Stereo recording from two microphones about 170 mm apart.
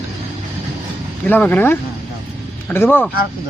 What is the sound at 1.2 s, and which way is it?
A man's voice, 10° left (ahead or behind).